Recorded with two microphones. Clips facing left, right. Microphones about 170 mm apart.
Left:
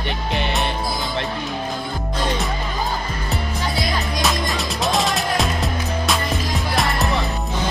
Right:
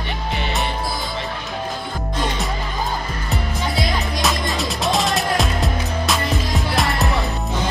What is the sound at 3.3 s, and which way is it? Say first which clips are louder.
Music: right 1 dB; centre (ahead or behind).